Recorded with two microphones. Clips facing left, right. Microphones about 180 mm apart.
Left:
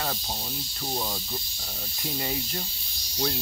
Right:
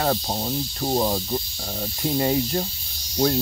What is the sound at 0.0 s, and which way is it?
Speech, 50° right (ahead or behind).